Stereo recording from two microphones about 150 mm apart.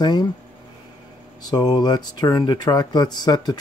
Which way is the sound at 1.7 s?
30° left (ahead or behind).